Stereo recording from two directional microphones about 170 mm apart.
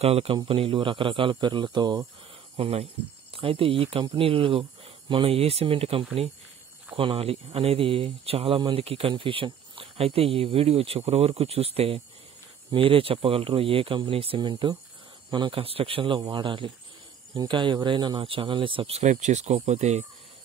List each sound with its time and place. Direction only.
0.0 s speech: 35° right (ahead or behind)